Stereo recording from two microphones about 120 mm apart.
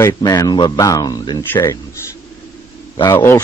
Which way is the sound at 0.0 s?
30° left (ahead or behind).